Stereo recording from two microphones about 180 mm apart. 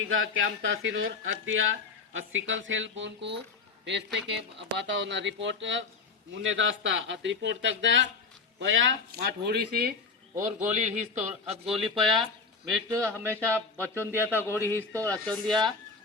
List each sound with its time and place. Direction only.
0.0 s speech: 90° right; by 9.9 s 60° right (ahead or behind)
10.3 s a man's voice: 45° right (ahead or behind)
11.6 s speech: centre (ahead or behind)
13.2 s speech: 15° right (ahead or behind)
14.3 s a man's voice: 15° left (ahead or behind)